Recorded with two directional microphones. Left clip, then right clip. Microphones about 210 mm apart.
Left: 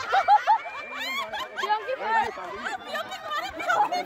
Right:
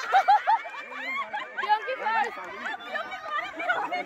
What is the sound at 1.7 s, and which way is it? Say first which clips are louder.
Chatter: even; 55° right (ahead or behind).